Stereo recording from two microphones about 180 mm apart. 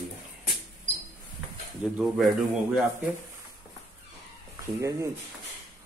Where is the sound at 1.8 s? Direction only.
Centre (ahead or behind).